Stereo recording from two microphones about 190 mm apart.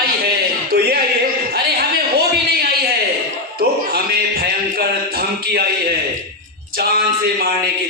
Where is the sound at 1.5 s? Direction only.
55° right (ahead or behind).